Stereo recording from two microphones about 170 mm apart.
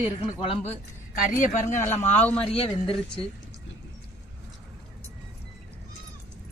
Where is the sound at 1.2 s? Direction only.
50° left (ahead or behind).